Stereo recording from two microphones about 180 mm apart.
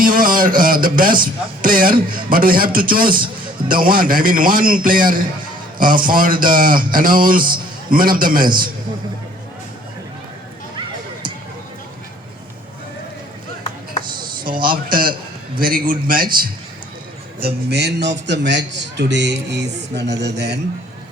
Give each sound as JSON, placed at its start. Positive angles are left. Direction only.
{"t": 0.0, "sound": "a sound", "side_deg": -50}
{"t": 0.6, "sound": "a man's voice", "side_deg": -50}
{"t": 14.1, "sound": "dishes", "side_deg": -25}
{"t": 15.6, "sound": "speech", "side_deg": -50}
{"t": 17.4, "sound": "a man's voice", "side_deg": -65}